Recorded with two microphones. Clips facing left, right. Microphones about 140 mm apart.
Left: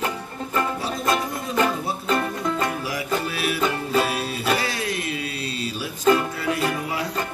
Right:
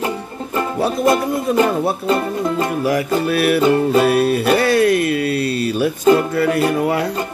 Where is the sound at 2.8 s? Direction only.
60° right (ahead or behind).